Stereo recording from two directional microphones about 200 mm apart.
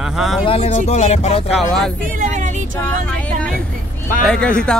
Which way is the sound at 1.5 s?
Centre (ahead or behind).